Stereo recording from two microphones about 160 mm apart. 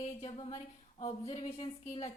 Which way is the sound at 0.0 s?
45° left (ahead or behind).